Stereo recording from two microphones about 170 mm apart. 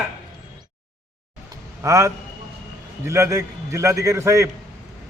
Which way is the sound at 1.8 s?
20° right (ahead or behind).